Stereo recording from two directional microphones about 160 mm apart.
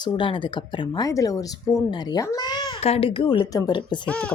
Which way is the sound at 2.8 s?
35° left (ahead or behind).